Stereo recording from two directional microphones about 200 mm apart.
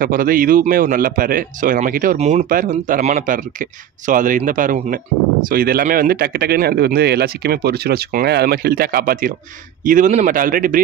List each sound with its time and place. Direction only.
0.0 s speech: 45° right (ahead or behind)